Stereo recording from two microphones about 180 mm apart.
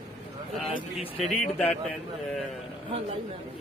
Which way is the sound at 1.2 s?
Centre (ahead or behind).